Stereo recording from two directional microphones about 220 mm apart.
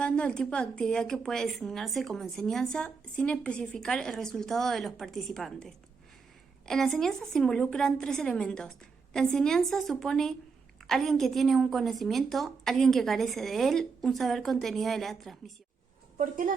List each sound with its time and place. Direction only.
0.0 s a woman's voice: 5° left (ahead or behind)
16.1 s a woman's voice: 40° right (ahead or behind)